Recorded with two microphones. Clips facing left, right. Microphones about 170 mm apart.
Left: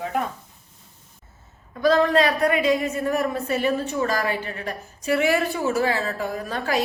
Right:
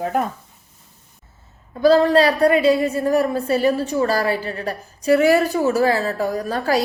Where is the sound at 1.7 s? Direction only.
30° right (ahead or behind).